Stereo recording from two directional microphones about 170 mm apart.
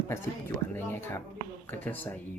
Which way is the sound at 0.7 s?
10° left (ahead or behind).